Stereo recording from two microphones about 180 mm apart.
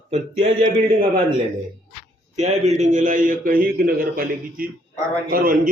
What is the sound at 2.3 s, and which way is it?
A man's voice, 40° right (ahead or behind).